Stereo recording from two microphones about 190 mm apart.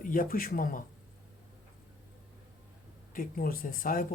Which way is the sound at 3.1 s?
50° left (ahead or behind).